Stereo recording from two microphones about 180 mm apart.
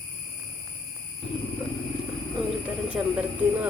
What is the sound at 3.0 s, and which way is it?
Speech, 10° right (ahead or behind).